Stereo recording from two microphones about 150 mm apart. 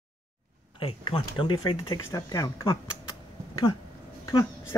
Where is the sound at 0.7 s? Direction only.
35° left (ahead or behind).